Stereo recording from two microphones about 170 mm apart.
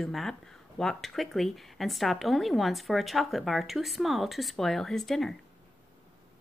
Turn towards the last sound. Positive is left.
turn(degrees=0)  # may be behind; listen again after turning